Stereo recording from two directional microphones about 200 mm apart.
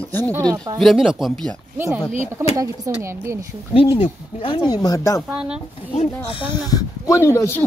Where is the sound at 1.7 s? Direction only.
10° right (ahead or behind).